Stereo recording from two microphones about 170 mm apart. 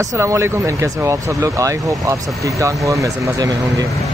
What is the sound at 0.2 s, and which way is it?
Speech, 15° right (ahead or behind).